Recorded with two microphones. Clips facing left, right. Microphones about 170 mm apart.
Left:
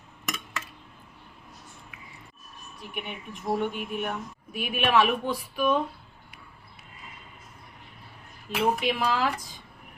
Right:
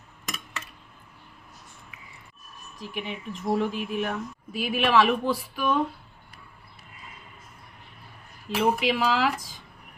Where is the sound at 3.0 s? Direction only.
90° right.